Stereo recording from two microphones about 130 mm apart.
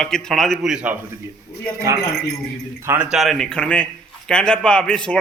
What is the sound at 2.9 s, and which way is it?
A man's voice, centre (ahead or behind).